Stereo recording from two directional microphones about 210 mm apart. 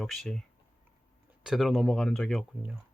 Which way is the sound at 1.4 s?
Centre (ahead or behind).